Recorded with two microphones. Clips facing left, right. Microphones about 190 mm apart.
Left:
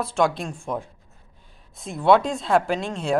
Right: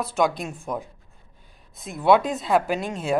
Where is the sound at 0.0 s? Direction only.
Centre (ahead or behind).